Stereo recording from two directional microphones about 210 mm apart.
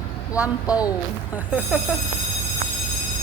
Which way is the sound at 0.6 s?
15° left (ahead or behind).